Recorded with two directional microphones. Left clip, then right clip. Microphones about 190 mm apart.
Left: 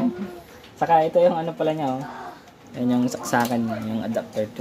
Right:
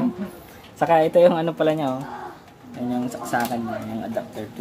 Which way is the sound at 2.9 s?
55° left (ahead or behind).